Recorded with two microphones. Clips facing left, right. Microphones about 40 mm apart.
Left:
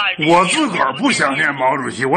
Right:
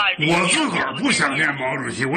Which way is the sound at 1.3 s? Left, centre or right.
Centre.